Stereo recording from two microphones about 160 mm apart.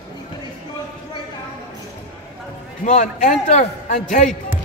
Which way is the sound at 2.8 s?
50° left (ahead or behind).